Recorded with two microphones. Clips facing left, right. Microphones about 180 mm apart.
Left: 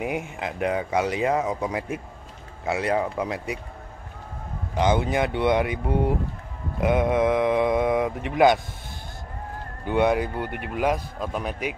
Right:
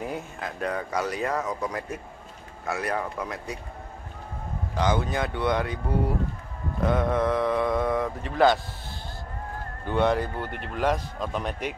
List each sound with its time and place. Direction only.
0.0 s speech: 15° left (ahead or behind)
4.7 s speech: 20° left (ahead or behind)
9.8 s speech: 10° left (ahead or behind)